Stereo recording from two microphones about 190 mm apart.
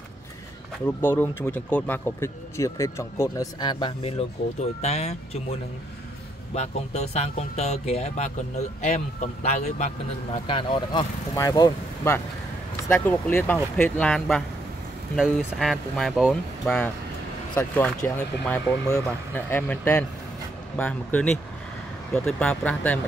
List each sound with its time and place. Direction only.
0.8 s speech: 10° left (ahead or behind)
4.8 s speech: 35° left (ahead or behind)
6.5 s speech: 35° left (ahead or behind)
10.4 s speech: 25° left (ahead or behind); by 22.9 s 5° left (ahead or behind)